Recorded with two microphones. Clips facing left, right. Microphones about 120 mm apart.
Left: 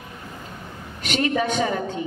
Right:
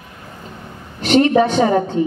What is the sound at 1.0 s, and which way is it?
A woman's voice, 35° right (ahead or behind).